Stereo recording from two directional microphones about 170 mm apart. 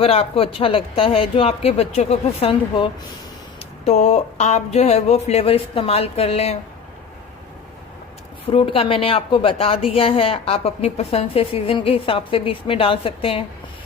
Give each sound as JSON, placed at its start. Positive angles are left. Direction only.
{"t": 0.0, "sound": "a woman's voice", "side_deg": 35}
{"t": 8.4, "sound": "a woman's voice", "side_deg": 30}